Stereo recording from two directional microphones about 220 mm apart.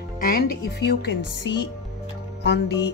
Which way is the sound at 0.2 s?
40° left (ahead or behind).